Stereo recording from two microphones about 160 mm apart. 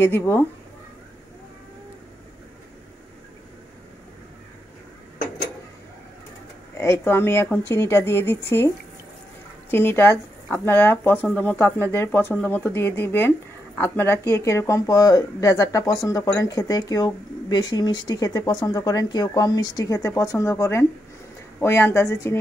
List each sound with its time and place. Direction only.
0.0 s speech: 15° left (ahead or behind)
6.8 s speech: 15° left (ahead or behind)